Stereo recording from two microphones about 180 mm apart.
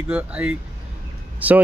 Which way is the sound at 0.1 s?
5° right (ahead or behind).